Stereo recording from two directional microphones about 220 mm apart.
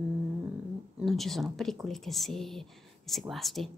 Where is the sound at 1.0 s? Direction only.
Centre (ahead or behind).